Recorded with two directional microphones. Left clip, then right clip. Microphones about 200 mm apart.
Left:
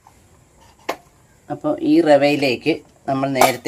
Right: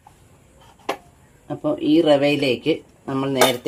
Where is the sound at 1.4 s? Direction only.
15° left (ahead or behind).